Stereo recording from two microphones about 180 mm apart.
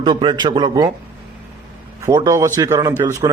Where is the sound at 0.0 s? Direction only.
25° right (ahead or behind).